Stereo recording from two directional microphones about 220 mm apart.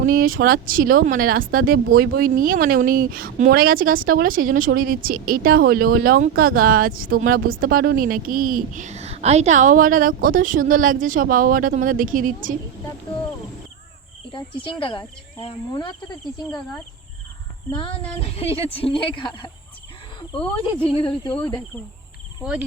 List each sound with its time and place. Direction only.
0.0 s speech: 40° right (ahead or behind)
14.3 s speech: 25° left (ahead or behind)
17.7 s speech: 25° left (ahead or behind)
20.6 s speech: 25° left (ahead or behind)
21.3 s speech: 10° left (ahead or behind)
22.4 s speech: 5° right (ahead or behind)